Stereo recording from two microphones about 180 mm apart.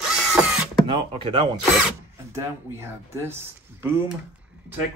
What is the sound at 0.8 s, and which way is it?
Speech, 25° right (ahead or behind).